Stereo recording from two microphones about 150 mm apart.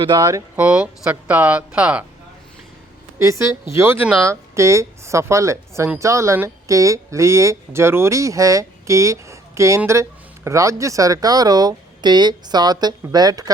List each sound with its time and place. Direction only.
0.2 s speech: 20° right (ahead or behind)
3.2 s speech: 20° right (ahead or behind)